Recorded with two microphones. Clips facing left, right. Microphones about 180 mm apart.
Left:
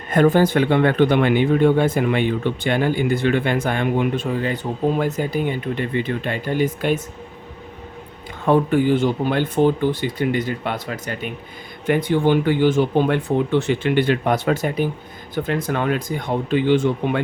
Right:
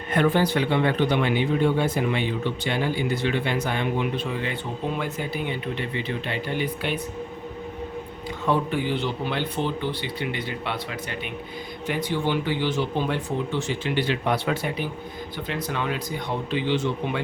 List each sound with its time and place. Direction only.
0.1 s speech: 45° left (ahead or behind)
8.4 s speech: 50° left (ahead or behind)